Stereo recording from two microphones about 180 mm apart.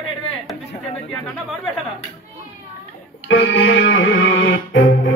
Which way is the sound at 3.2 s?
90° left.